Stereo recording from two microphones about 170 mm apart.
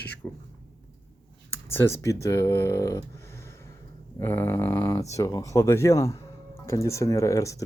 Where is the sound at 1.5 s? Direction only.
15° left (ahead or behind).